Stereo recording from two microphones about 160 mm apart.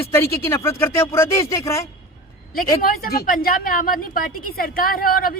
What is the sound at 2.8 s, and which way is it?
A woman's voice, 70° left (ahead or behind).